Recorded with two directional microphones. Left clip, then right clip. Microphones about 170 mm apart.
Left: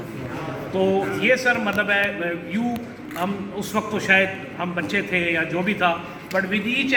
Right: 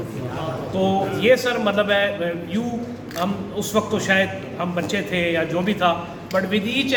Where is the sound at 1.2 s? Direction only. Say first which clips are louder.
Right 3 dB; 35° right (ahead or behind).